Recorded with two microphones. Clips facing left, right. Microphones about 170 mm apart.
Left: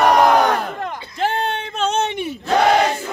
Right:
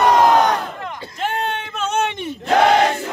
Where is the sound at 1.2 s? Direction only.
35° left (ahead or behind).